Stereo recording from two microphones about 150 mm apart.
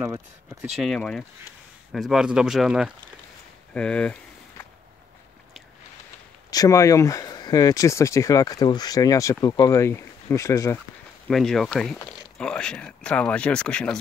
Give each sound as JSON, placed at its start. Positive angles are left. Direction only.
{"t": 0.7, "sound": "speech", "side_deg": 5}
{"t": 3.7, "sound": "speech", "side_deg": 5}
{"t": 6.5, "sound": "speech", "side_deg": 20}
{"t": 11.2, "sound": "speech", "side_deg": 5}